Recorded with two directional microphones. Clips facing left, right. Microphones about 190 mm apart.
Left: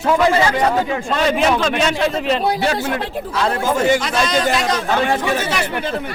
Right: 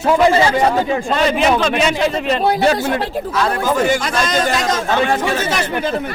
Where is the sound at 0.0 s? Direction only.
30° right (ahead or behind).